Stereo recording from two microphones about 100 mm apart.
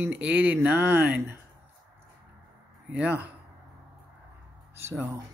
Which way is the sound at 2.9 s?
15° right (ahead or behind).